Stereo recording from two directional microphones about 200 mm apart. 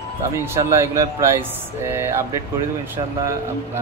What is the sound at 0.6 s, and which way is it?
Speech, 15° right (ahead or behind).